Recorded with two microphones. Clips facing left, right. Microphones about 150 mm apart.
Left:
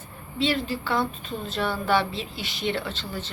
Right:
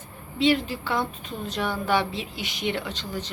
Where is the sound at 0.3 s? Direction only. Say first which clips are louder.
Right 3 dB; 15° right (ahead or behind).